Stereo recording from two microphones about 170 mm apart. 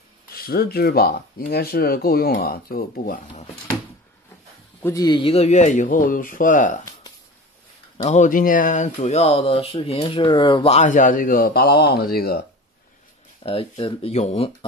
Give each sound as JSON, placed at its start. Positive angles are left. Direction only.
{"t": 0.3, "sound": "speech", "side_deg": 60}
{"t": 4.8, "sound": "speech", "side_deg": 20}
{"t": 8.0, "sound": "speech", "side_deg": 45}
{"t": 13.4, "sound": "speech", "side_deg": 35}